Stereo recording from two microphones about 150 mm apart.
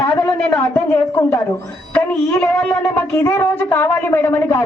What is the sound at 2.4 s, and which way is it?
A woman's voice, 10° left (ahead or behind).